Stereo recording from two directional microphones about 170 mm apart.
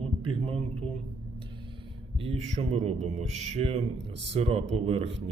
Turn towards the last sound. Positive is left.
turn(degrees=-35)  # may be behind; listen again after turning